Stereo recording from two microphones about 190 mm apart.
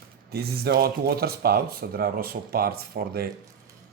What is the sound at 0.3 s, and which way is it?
Speech, 55° right (ahead or behind).